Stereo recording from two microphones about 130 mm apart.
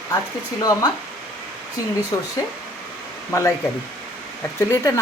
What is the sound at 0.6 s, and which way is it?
Speech, 30° left (ahead or behind).